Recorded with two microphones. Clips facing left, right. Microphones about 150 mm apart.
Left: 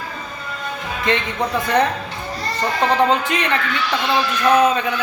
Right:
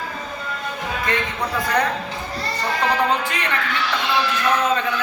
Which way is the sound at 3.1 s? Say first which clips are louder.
Left 4 dB; 20° left (ahead or behind).